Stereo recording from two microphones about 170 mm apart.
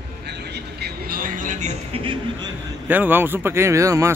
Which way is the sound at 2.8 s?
10° right (ahead or behind).